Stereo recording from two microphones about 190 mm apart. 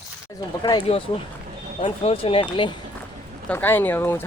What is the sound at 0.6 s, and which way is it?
Speech, 25° left (ahead or behind).